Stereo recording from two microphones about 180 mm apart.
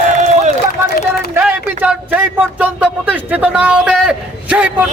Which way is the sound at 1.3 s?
10° right (ahead or behind).